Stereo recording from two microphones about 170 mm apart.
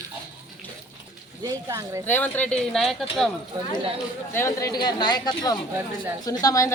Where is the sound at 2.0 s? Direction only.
10° left (ahead or behind).